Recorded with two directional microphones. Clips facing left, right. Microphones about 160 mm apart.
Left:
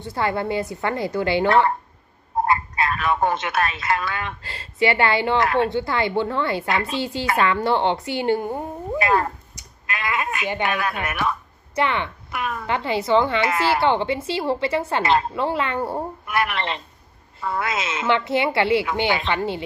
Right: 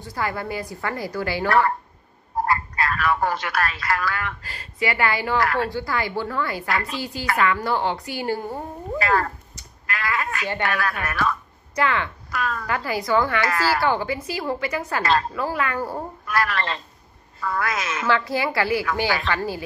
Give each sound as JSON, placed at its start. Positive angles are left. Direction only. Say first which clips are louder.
{"t": 0.0, "sound": "speech", "louder": "left 4 dB", "side_deg": 25}